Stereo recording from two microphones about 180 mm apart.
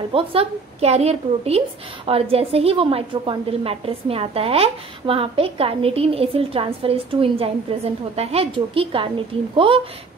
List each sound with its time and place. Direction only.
0.1 s a woman's voice: 30° right (ahead or behind)